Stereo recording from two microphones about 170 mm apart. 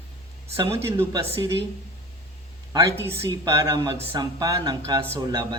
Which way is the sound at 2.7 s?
15° right (ahead or behind).